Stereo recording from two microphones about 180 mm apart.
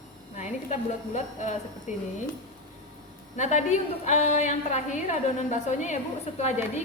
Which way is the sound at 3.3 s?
40° left (ahead or behind).